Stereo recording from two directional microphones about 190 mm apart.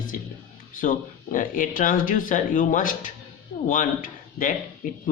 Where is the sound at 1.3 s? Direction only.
45° left (ahead or behind).